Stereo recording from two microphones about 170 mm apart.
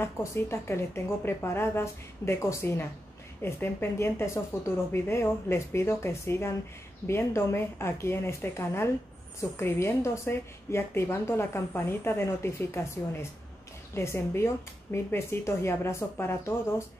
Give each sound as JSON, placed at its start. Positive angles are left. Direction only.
{"t": 0.0, "sound": "a woman's voice", "side_deg": 15}